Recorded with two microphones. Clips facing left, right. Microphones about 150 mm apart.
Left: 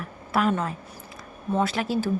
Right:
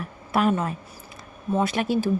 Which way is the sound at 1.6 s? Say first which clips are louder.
Right 1 dB; 15° right (ahead or behind).